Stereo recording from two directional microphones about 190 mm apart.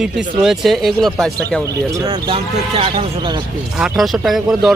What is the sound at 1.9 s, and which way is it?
Speech, 20° right (ahead or behind).